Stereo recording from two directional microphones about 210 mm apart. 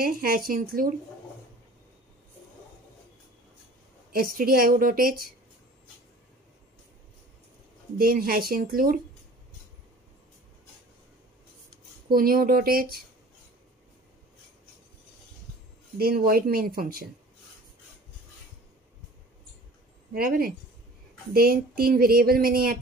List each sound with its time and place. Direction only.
0.0 s speech: 45° right (ahead or behind)
4.1 s speech: 45° right (ahead or behind)
8.0 s speech: 45° right (ahead or behind)
12.1 s speech: 45° right (ahead or behind)
16.0 s speech: 45° right (ahead or behind)
20.2 s speech: 45° right (ahead or behind)